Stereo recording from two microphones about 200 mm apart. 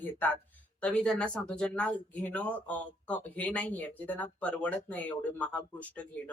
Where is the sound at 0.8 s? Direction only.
5° left (ahead or behind).